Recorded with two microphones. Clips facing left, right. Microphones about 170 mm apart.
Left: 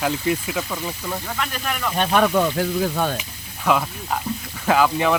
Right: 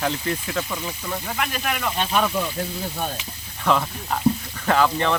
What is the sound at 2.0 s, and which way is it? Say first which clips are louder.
Speech: left 7 dB; 65° left (ahead or behind).